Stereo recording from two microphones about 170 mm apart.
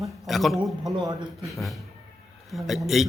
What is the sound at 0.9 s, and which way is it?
Speech, 20° right (ahead or behind).